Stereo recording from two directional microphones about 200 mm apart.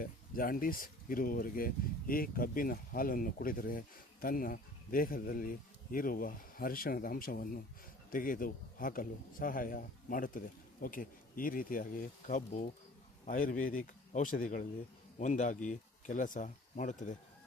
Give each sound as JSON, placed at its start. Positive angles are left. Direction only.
{"t": 0.0, "sound": "speech", "side_deg": 45}